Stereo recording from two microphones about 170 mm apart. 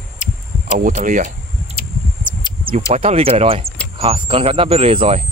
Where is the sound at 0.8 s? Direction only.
50° right (ahead or behind).